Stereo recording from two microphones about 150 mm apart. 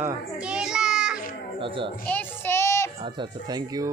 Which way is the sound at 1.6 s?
35° right (ahead or behind).